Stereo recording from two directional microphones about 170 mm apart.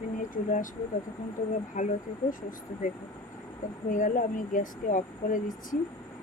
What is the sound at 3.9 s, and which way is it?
Speech, 50° left (ahead or behind).